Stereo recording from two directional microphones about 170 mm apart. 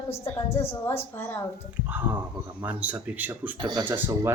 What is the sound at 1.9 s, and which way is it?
A man's voice, 10° right (ahead or behind).